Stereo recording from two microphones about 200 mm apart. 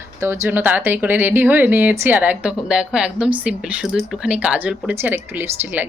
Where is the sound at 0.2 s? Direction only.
10° right (ahead or behind).